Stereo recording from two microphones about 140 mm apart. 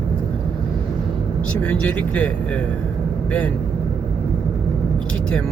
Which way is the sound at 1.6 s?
10° left (ahead or behind).